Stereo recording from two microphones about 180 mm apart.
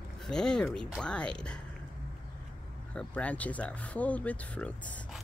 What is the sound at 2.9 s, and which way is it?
Speech, 5° left (ahead or behind).